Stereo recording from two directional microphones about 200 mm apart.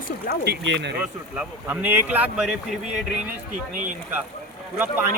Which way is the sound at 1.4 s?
5° right (ahead or behind).